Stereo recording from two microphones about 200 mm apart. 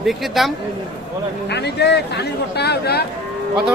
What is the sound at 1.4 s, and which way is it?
Speech, 55° left (ahead or behind).